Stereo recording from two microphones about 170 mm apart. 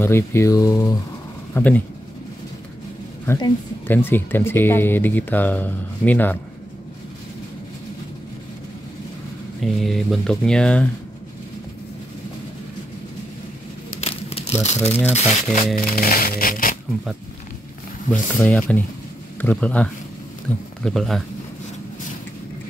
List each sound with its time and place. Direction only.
0.0 s speech: 15° left (ahead or behind)
1.5 s speech: 10° left (ahead or behind)
3.3 s speech: 25° left (ahead or behind)
3.8 s speech: 10° left (ahead or behind)
9.6 s speech: centre (ahead or behind)
14.5 s speech: 40° left (ahead or behind); by 16.7 s 55° left (ahead or behind)
18.6 s speech: 10° left (ahead or behind)